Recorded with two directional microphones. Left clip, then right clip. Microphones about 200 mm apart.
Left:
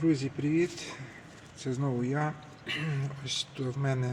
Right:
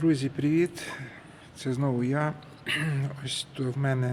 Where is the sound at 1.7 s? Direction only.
25° right (ahead or behind).